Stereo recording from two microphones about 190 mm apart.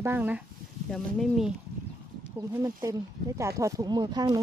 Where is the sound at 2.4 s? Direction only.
15° right (ahead or behind).